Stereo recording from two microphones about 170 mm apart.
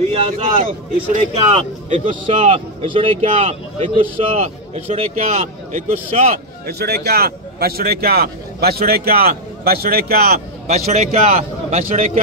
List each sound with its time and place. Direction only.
0.6 s speech: 55° right (ahead or behind)
1.3 s speech: 35° right (ahead or behind)
6.6 s speech: 70° right (ahead or behind)
10.7 s speech: 40° right (ahead or behind)